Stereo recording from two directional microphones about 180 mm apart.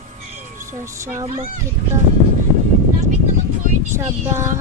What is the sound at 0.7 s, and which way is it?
Child singing, 15° right (ahead or behind).